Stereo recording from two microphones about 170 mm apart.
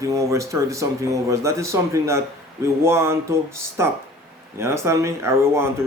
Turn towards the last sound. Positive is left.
turn(degrees=-15)  # may be behind; listen again after turning